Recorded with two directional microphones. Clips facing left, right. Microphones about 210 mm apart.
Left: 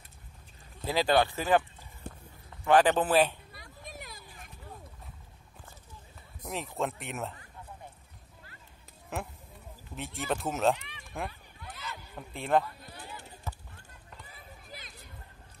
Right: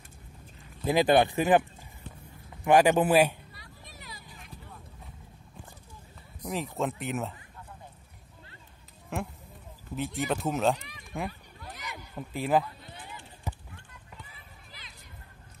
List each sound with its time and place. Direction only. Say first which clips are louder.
0.8 s a man's voice: right 4 dB; 15° right (ahead or behind)
2.1 s a sound: left 4 dB; 50° left (ahead or behind)
2.6 s a man's voice: right 2 dB; 15° right (ahead or behind)
3.5 s a sound: left 5 dB; 45° left (ahead or behind)
6.4 s speech: right 3 dB; centre (ahead or behind)
9.1 s speech: right 3 dB; centre (ahead or behind)
11.7 s a sound: right 2 dB; 15° right (ahead or behind)
12.3 s speech: right 1 dB; 5° right (ahead or behind)
13.5 s run: right 4 dB; 15° right (ahead or behind)
14.2 s run: left 3 dB; 45° left (ahead or behind)